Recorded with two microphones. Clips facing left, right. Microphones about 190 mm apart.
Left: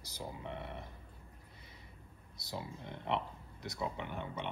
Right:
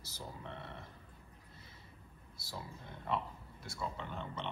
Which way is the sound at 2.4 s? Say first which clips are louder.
Left 4 dB; 20° left (ahead or behind).